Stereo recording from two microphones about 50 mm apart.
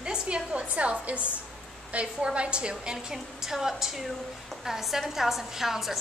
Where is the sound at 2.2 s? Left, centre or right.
Right; by 5.9 s centre.